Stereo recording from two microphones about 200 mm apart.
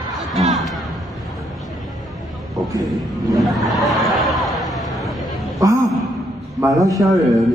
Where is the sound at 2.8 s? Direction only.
Centre (ahead or behind).